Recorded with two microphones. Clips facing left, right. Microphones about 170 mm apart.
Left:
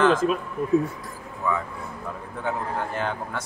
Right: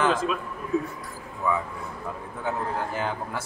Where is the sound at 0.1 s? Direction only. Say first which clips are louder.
Left 4 dB; 45° left (ahead or behind).